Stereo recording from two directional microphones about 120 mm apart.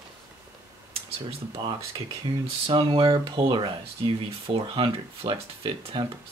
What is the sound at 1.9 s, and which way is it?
Speech, 40° right (ahead or behind).